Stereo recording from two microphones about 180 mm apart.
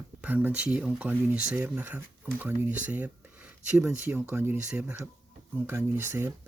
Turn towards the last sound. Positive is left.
turn(degrees=-15)  # may be behind; listen again after turning